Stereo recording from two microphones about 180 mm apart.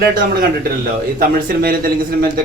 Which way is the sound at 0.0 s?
50° right (ahead or behind).